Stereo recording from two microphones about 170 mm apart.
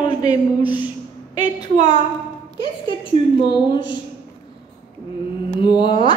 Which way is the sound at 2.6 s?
30° left (ahead or behind).